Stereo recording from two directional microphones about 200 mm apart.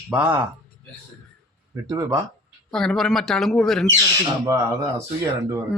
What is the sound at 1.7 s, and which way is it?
Speech, 15° right (ahead or behind).